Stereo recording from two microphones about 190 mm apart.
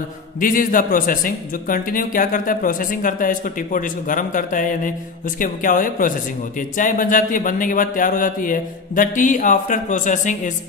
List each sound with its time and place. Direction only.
0.3 s a man's voice: 45° left (ahead or behind)